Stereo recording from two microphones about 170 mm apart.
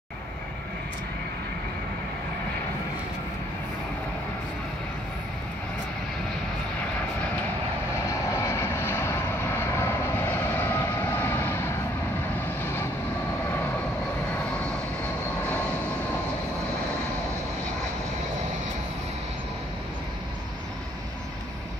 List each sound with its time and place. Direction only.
8.5 s vehicle: 15° left (ahead or behind)